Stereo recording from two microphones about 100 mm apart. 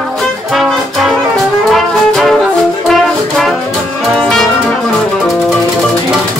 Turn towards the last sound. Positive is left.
turn(degrees=5)  # may be behind; listen again after turning